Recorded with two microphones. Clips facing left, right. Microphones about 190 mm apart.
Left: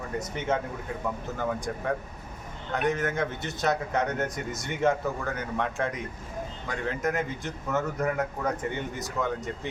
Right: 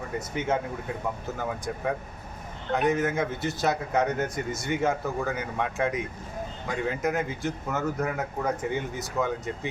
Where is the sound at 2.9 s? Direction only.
5° right (ahead or behind).